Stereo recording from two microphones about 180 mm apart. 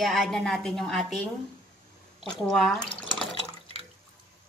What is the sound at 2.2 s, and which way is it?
Speech, centre (ahead or behind).